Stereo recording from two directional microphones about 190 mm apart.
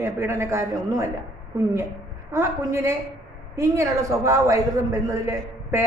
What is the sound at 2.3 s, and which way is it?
A woman's voice, 15° right (ahead or behind).